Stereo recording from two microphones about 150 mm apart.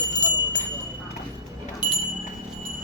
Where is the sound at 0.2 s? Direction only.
30° left (ahead or behind).